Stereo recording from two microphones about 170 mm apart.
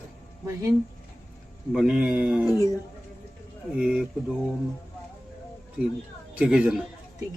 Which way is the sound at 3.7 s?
5° right (ahead or behind).